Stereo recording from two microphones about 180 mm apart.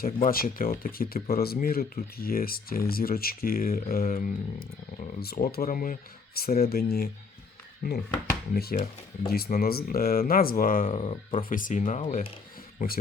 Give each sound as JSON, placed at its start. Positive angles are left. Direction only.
{"t": 0.0, "sound": "speech", "side_deg": 55}
{"t": 10.9, "sound": "speech", "side_deg": 30}
{"t": 11.4, "sound": "speech", "side_deg": 50}